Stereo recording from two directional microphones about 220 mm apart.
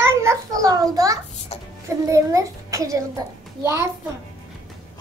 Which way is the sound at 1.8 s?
15° right (ahead or behind).